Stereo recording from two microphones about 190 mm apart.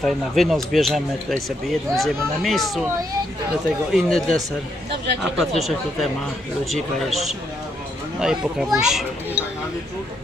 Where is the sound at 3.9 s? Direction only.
Centre (ahead or behind).